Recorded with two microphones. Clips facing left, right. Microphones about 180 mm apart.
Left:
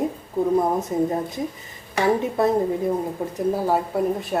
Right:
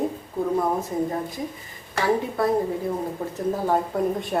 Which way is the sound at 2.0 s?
25° left (ahead or behind).